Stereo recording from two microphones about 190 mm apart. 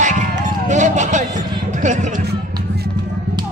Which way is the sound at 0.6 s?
40° right (ahead or behind).